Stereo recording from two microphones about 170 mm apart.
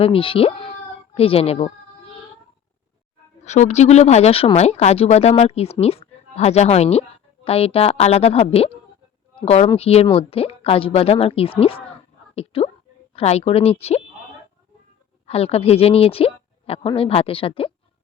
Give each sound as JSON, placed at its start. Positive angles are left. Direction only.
{"t": 0.0, "sound": "speech", "side_deg": 30}
{"t": 3.4, "sound": "speech", "side_deg": 40}
{"t": 15.3, "sound": "speech", "side_deg": 35}